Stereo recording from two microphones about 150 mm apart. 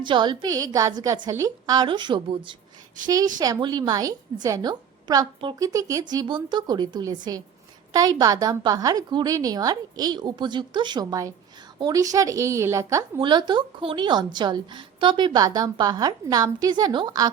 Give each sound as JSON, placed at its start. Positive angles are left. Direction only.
{"t": 0.0, "sound": "a woman's voice", "side_deg": -30}